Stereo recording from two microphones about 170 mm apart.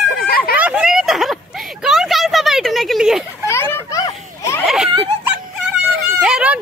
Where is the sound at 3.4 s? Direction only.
15° left (ahead or behind).